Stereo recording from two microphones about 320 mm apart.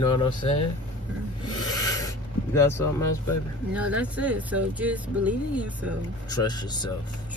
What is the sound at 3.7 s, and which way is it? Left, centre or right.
Speech, centre.